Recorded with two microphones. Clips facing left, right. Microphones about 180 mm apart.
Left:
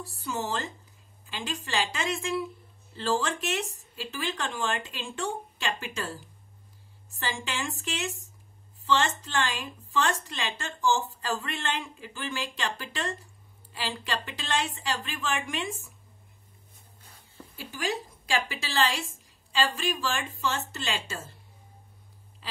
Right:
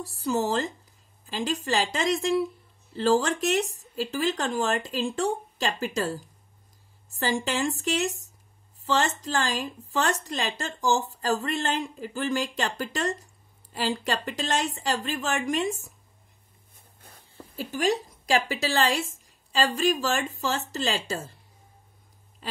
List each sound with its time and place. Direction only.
0.0 s speech: 35° right (ahead or behind)
17.4 s a woman's voice: 40° right (ahead or behind)
22.4 s duck: 45° right (ahead or behind)